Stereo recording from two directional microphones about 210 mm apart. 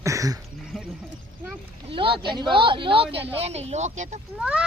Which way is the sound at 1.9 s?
25° right (ahead or behind).